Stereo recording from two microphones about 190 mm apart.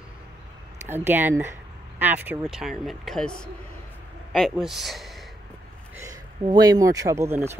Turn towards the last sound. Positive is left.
turn(degrees=-15)  # may be behind; listen again after turning